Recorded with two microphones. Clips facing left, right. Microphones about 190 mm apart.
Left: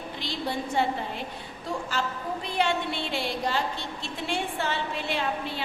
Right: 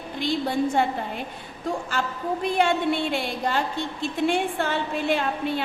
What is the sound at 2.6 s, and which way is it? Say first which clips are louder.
A woman's voice: right 4 dB; 50° right (ahead or behind).